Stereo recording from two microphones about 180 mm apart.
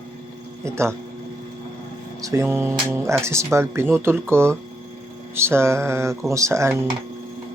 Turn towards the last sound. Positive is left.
turn(degrees=-15)  # may be behind; listen again after turning